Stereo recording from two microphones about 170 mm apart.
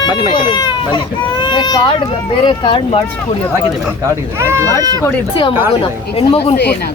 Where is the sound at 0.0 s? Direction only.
25° left (ahead or behind).